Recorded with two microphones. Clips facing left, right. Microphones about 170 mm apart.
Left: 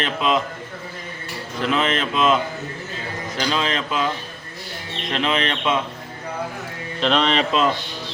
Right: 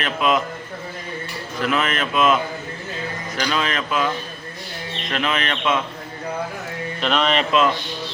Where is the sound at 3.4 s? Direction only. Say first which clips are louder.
Even; 25° left (ahead or behind).